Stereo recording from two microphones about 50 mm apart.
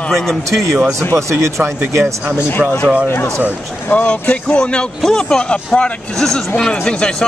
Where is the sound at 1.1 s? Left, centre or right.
Right.